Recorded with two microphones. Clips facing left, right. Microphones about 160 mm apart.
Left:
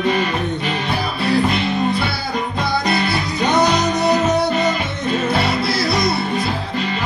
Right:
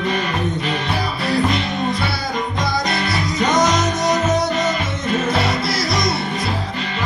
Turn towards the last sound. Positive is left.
turn(degrees=60)  # may be behind; listen again after turning